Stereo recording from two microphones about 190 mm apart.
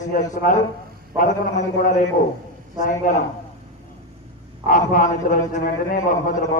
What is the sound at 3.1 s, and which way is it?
Speech, 45° left (ahead or behind).